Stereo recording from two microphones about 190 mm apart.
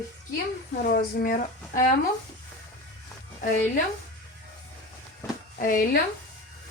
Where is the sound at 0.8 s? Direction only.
50° left (ahead or behind).